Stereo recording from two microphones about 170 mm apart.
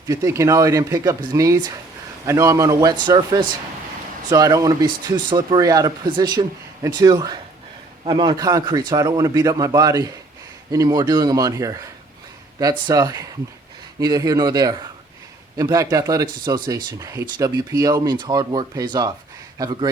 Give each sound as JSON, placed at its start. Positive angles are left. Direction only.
{"t": 0.1, "sound": "speech", "side_deg": -20}